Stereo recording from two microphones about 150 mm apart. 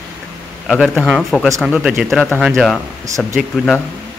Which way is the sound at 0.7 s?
Centre (ahead or behind).